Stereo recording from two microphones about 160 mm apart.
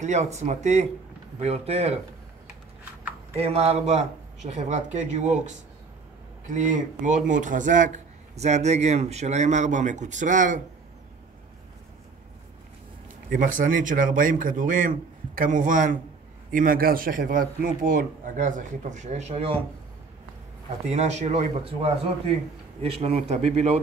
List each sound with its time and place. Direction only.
0.0 s speech: 45° right (ahead or behind)
3.3 s speech: 40° right (ahead or behind)
13.3 s speech: 55° right (ahead or behind); by 19.6 s 35° right (ahead or behind)
20.9 s speech: 45° right (ahead or behind)